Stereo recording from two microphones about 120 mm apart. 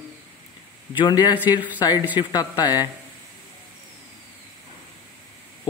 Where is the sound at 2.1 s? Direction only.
35° left (ahead or behind).